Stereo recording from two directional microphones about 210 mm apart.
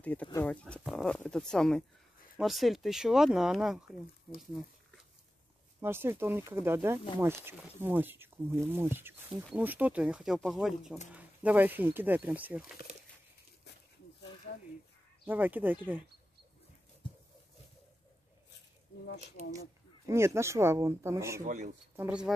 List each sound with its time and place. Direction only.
0.0 s speech: 5° left (ahead or behind)
5.8 s speech: 10° right (ahead or behind)
15.2 s speech: 10° right (ahead or behind)
20.1 s speech: 10° right (ahead or behind)
21.5 s speech: 40° right (ahead or behind)
21.9 s speech: 5° right (ahead or behind)